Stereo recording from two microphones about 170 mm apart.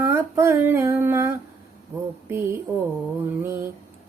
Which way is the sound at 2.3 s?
15° right (ahead or behind).